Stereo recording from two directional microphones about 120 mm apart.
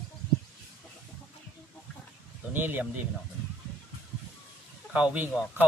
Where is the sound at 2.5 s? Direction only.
15° right (ahead or behind).